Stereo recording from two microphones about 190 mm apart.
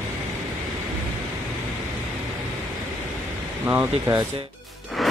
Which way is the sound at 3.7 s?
10° right (ahead or behind).